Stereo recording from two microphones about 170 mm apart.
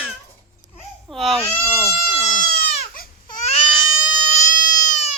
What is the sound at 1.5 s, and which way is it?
Goat, 10° left (ahead or behind).